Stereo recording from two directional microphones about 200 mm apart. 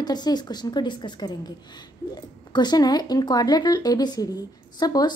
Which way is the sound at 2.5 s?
20° left (ahead or behind).